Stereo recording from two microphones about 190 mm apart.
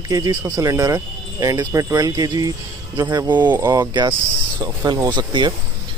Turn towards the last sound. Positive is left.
turn(degrees=-25)  # may be behind; listen again after turning